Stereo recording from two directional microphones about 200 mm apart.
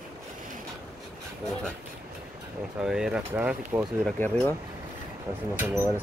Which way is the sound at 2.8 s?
5° right (ahead or behind).